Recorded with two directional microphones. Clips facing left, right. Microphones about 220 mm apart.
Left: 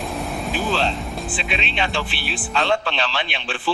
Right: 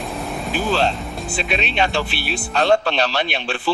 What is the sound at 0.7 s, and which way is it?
Speech, 45° right (ahead or behind).